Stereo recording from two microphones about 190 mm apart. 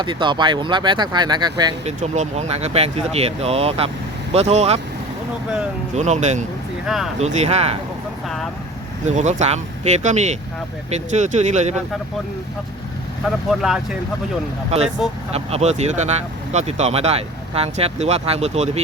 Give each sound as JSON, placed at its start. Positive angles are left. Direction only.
{"t": 0.0, "sound": "speech", "side_deg": -25}
{"t": 1.8, "sound": "speech", "side_deg": -35}
{"t": 6.0, "sound": "speech", "side_deg": -35}
{"t": 6.8, "sound": "speech", "side_deg": 0}
{"t": 7.2, "sound": "speech", "side_deg": -35}
{"t": 9.0, "sound": "speech", "side_deg": -35}
{"t": 13.2, "sound": "speech", "side_deg": 0}
{"t": 14.8, "sound": "speech", "side_deg": 0}
{"t": 15.3, "sound": "speech", "side_deg": -35}